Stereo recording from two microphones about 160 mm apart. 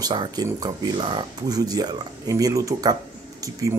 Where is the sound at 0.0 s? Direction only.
25° right (ahead or behind).